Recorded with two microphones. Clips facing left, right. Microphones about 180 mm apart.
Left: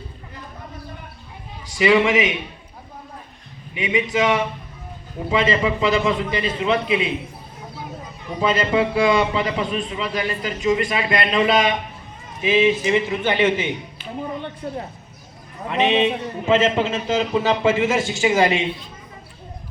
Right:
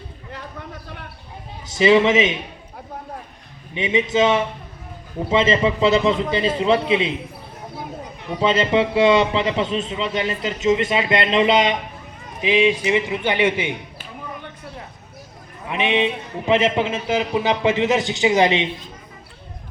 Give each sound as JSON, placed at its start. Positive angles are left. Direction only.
{"t": 1.6, "sound": "a man's voice", "side_deg": -25}
{"t": 3.8, "sound": "a man's voice", "side_deg": -25}
{"t": 8.4, "sound": "a man's voice", "side_deg": -25}
{"t": 15.7, "sound": "a man's voice", "side_deg": -15}